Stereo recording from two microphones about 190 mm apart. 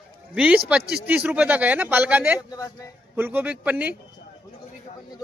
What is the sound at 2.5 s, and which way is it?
Speech, 15° left (ahead or behind).